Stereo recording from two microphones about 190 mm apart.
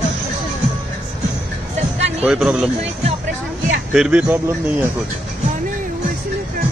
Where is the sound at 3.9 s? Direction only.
5° right (ahead or behind).